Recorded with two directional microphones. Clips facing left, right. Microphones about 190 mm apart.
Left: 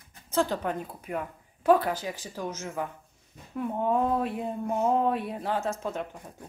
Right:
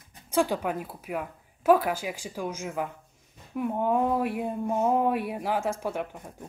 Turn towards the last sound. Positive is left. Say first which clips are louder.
# right 2 dB
turn(degrees=-10)  # may be behind; listen again after turning